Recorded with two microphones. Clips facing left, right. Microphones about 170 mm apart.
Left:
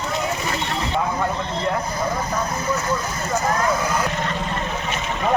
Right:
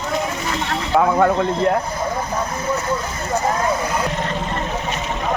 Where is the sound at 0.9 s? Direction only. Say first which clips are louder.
Right 10 dB; 65° right (ahead or behind).